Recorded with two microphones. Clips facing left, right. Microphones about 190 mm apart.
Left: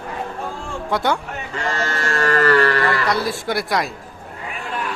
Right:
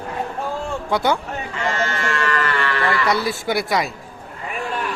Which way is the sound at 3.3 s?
Centre (ahead or behind).